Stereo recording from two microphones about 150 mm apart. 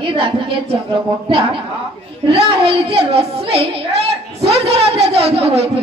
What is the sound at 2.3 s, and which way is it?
A woman's voice, 40° right (ahead or behind).